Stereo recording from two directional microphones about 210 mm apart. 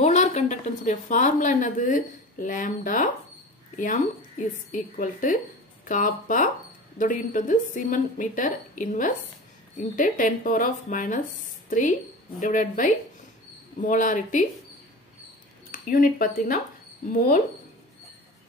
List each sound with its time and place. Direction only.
0.0 s a woman's voice: 35° left (ahead or behind)
12.4 s a woman's voice: 40° left (ahead or behind)
15.7 s a woman's voice: 40° left (ahead or behind)